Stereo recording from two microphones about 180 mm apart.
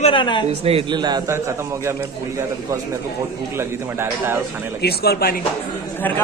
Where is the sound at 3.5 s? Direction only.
15° right (ahead or behind).